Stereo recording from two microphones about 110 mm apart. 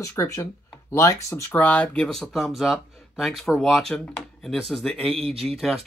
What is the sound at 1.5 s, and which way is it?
Speech, 15° left (ahead or behind).